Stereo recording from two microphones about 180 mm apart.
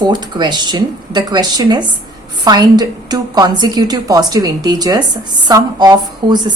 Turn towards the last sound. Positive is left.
turn(degrees=-25)  # may be behind; listen again after turning